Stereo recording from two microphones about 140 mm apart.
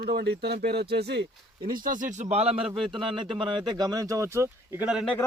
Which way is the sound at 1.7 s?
80° right.